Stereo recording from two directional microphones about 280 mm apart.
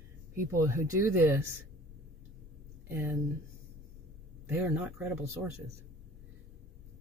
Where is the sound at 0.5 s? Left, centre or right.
Centre.